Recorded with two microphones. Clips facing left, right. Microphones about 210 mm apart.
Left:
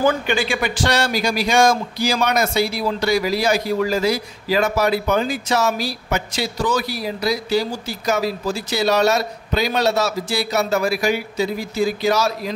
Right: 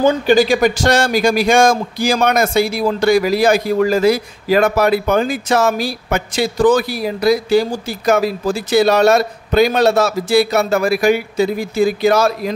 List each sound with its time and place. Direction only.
0.3 s a man's voice: 40° right (ahead or behind); by 12.5 s 55° right (ahead or behind)